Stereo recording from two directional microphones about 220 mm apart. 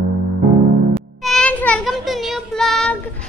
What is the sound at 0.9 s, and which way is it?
Child singing, centre (ahead or behind).